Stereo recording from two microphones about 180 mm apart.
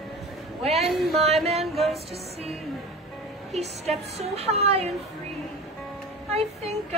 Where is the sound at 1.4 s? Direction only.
35° right (ahead or behind).